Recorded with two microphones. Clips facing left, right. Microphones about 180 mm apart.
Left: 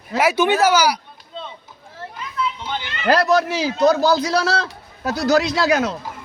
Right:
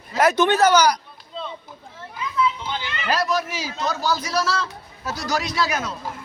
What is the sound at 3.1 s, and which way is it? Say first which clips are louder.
A man's voice: left 7 dB; 70° left (ahead or behind).